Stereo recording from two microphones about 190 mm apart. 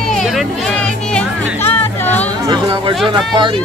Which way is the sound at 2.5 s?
25° right (ahead or behind).